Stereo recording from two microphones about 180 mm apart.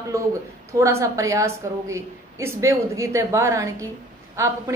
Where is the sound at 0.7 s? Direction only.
15° right (ahead or behind).